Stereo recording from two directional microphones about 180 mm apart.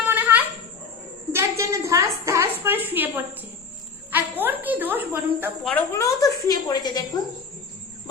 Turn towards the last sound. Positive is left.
turn(degrees=20)  # may be behind; listen again after turning